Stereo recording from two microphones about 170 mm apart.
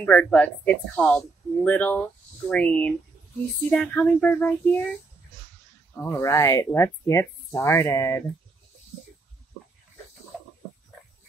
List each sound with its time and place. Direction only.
0.0 s speech: 10° left (ahead or behind)
5.9 s speech: 15° left (ahead or behind)